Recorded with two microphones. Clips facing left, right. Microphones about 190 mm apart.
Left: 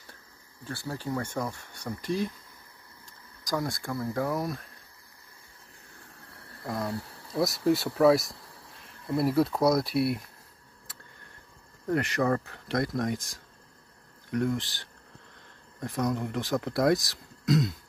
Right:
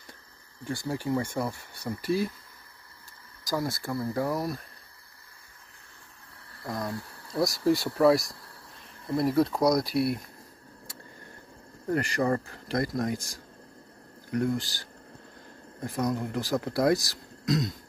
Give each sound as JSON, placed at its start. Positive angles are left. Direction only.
{"t": 0.7, "sound": "speech", "side_deg": -15}
{"t": 3.4, "sound": "speech", "side_deg": -5}
{"t": 6.6, "sound": "speech", "side_deg": 5}
{"t": 11.9, "sound": "speech", "side_deg": 0}